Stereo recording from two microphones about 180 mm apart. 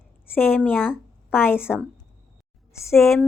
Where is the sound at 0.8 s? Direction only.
5° right (ahead or behind).